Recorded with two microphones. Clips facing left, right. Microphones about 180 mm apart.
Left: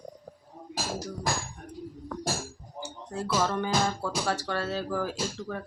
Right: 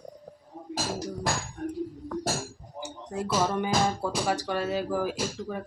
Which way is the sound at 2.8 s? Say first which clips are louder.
Right 2 dB; 20° right (ahead or behind).